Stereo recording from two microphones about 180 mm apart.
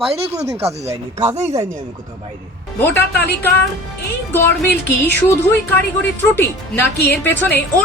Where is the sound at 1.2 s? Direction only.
40° right (ahead or behind).